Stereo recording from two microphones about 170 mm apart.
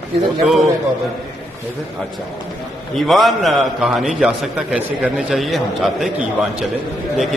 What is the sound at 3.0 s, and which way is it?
A man's voice, centre (ahead or behind).